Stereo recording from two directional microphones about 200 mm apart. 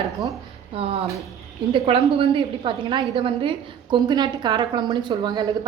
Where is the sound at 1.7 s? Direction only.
30° right (ahead or behind).